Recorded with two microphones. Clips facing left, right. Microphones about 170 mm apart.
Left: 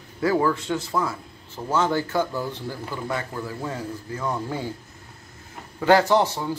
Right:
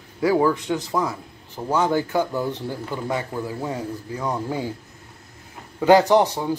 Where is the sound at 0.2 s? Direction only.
10° right (ahead or behind).